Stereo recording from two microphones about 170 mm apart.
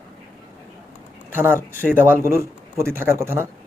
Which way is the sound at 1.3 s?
10° right (ahead or behind).